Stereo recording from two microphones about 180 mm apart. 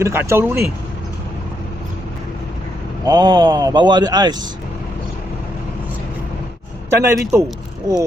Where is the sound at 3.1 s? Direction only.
25° right (ahead or behind).